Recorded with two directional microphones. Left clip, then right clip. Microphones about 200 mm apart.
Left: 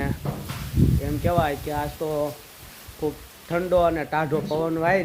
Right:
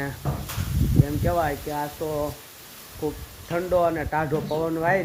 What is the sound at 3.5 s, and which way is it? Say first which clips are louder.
Speech: left 2 dB; 15° left (ahead or behind).